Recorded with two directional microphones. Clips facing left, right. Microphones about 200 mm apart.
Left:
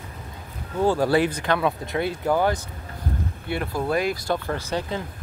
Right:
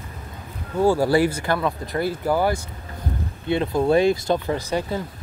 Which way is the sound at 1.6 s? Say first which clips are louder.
Even; centre (ahead or behind).